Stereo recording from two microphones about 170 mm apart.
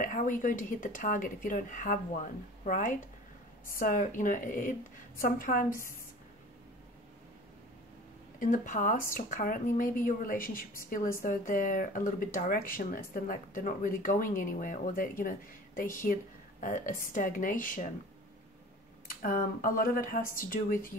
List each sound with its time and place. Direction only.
0.0 s speech: 55° left (ahead or behind)
8.4 s speech: 50° left (ahead or behind)
19.2 s speech: 55° left (ahead or behind)